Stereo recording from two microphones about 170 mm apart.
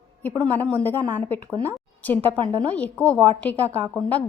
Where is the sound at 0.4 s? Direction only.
10° left (ahead or behind).